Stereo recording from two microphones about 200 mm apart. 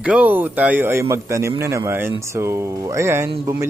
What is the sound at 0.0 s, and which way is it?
A man's voice, 5° right (ahead or behind).